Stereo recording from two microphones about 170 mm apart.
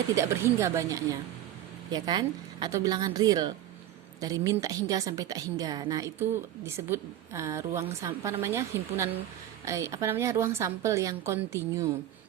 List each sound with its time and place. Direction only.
0.2 s a woman's voice: 15° right (ahead or behind)